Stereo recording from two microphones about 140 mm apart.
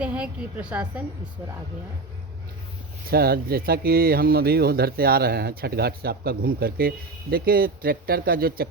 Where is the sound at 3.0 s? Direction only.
90° right.